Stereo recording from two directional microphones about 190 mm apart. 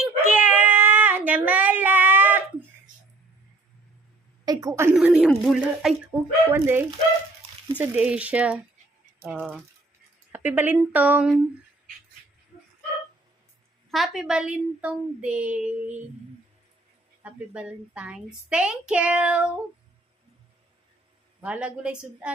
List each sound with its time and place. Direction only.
0.3 s child singing: 5° right (ahead or behind)
4.4 s speech: 15° right (ahead or behind)
4.9 s a child's voice: 5° right (ahead or behind)
13.9 s a child's voice: centre (ahead or behind)
17.2 s a child's voice: 5° right (ahead or behind)
21.4 s a child's voice: 5° right (ahead or behind)